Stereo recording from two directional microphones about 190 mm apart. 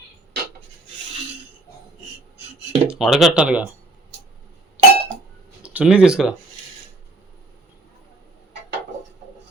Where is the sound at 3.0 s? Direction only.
Centre (ahead or behind).